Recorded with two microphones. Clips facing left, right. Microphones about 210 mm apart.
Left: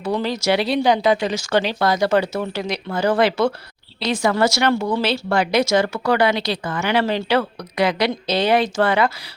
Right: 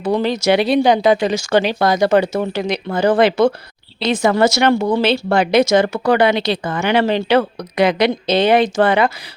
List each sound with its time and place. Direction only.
0.0 s speech: 20° right (ahead or behind)